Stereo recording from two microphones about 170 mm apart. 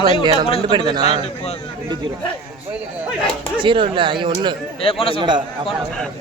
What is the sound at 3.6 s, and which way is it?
Speech, 30° right (ahead or behind).